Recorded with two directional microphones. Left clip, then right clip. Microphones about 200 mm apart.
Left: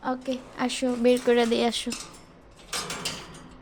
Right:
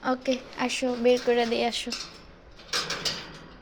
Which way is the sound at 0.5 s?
20° left (ahead or behind).